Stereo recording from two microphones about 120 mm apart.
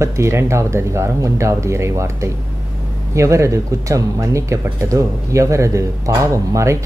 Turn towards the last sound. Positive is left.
turn(degrees=-25)  # may be behind; listen again after turning